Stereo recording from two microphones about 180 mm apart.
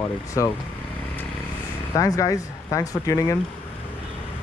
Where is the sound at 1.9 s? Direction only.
20° left (ahead or behind).